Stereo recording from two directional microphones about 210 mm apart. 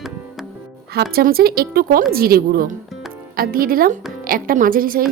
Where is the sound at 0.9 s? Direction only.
50° right (ahead or behind).